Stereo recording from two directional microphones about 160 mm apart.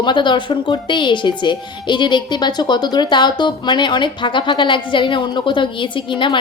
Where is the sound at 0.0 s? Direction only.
30° left (ahead or behind).